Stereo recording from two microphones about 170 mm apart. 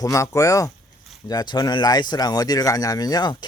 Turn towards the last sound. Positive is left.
turn(degrees=25)  # may be behind; listen again after turning